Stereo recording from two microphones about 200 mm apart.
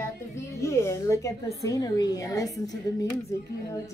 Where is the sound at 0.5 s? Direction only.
15° left (ahead or behind).